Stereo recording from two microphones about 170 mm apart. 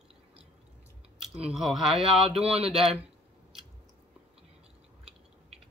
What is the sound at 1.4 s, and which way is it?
Speech, centre (ahead or behind).